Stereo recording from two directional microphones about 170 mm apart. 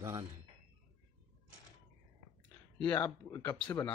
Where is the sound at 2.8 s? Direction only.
10° left (ahead or behind).